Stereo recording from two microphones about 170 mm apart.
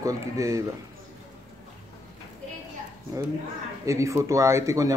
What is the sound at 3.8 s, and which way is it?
Speech, 20° right (ahead or behind).